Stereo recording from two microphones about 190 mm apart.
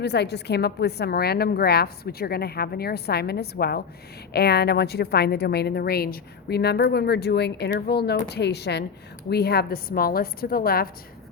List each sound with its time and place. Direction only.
0.0 s a woman's voice: 60° left (ahead or behind)